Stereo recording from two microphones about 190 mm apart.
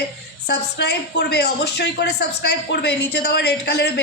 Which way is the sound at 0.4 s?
60° left (ahead or behind).